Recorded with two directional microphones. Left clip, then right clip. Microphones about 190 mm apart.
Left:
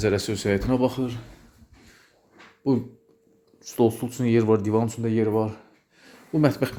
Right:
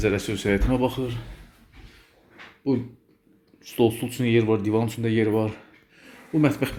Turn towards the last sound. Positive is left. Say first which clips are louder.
# even
turn(degrees=20)  # may be behind; listen again after turning